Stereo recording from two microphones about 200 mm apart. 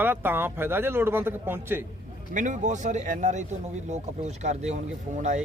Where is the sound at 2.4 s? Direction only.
40° right (ahead or behind).